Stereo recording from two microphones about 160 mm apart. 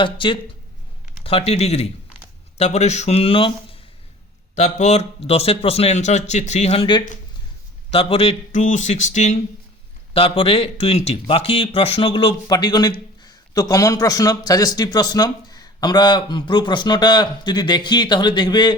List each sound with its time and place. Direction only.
0.0 s speech: 30° left (ahead or behind)
4.5 s a man's voice: 45° left (ahead or behind)
7.9 s a man's voice: 35° left (ahead or behind)
10.2 s speech: 35° left (ahead or behind)